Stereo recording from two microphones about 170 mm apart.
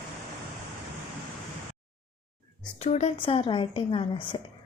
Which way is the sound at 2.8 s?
40° left (ahead or behind).